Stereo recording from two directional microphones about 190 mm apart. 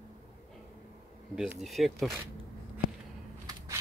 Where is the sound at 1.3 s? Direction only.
Centre (ahead or behind).